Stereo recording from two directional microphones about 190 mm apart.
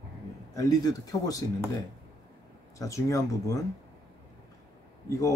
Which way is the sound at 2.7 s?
15° left (ahead or behind).